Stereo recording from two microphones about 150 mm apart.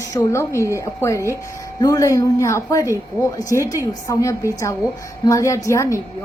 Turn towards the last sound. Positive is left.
turn(degrees=20)  # may be behind; listen again after turning